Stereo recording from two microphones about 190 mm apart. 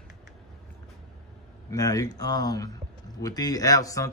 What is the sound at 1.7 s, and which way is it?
Speech, 20° left (ahead or behind).